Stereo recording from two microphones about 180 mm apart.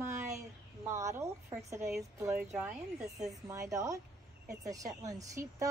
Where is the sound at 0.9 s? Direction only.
15° right (ahead or behind).